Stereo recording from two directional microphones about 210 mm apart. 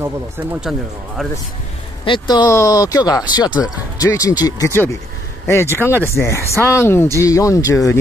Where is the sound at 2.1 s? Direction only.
20° left (ahead or behind).